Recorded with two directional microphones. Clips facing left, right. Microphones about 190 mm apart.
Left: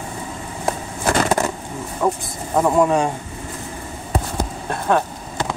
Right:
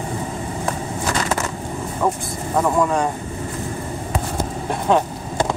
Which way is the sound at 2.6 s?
20° left (ahead or behind).